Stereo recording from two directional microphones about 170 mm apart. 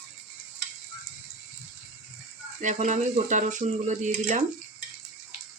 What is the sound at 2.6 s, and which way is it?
Speech, 45° right (ahead or behind).